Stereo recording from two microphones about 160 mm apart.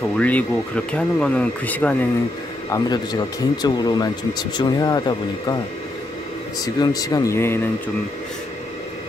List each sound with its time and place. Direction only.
0.2 s speech: 10° left (ahead or behind)
2.7 s speech: 25° left (ahead or behind)
6.6 s speech: 25° left (ahead or behind)